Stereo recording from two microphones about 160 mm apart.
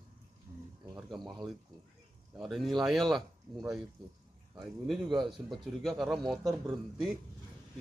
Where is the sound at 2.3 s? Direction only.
Centre (ahead or behind).